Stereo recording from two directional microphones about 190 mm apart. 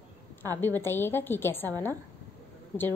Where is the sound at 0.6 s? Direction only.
10° left (ahead or behind).